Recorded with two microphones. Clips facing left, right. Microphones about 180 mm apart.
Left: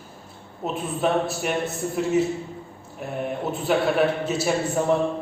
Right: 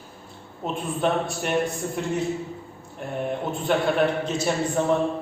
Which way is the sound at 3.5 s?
5° left (ahead or behind).